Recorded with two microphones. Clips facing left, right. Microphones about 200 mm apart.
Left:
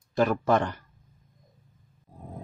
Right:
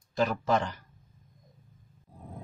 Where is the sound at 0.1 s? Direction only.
55° left (ahead or behind).